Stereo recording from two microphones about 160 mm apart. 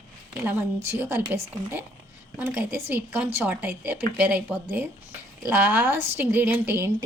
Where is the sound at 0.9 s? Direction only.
15° right (ahead or behind).